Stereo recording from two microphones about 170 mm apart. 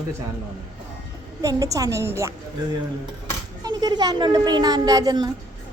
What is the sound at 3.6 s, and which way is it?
A woman's voice, 25° right (ahead or behind).